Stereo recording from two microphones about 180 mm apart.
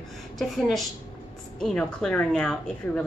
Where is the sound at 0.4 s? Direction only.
Centre (ahead or behind).